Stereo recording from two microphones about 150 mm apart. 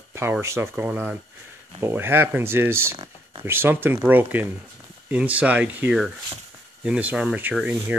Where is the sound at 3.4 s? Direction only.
15° right (ahead or behind).